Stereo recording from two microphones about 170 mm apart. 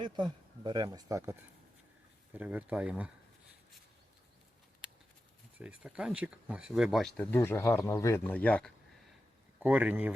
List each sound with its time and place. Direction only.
0.0 s speech: 25° right (ahead or behind); by 3.1 s 10° right (ahead or behind)
5.5 s speech: 5° right (ahead or behind); by 8.7 s 10° left (ahead or behind)
9.6 s speech: 10° right (ahead or behind)